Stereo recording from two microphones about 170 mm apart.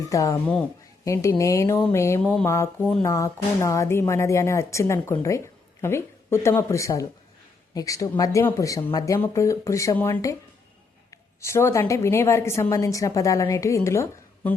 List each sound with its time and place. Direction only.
0.1 s a woman's voice: 20° left (ahead or behind)
11.3 s a woman's voice: 15° left (ahead or behind)